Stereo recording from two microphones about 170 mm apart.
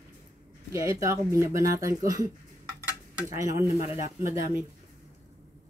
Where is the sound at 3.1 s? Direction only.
15° right (ahead or behind).